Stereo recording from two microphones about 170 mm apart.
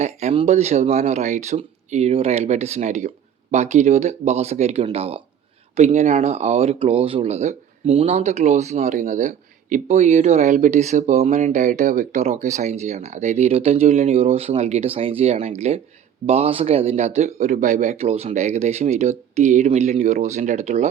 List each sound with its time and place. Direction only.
0.0 s speech: 40° right (ahead or behind)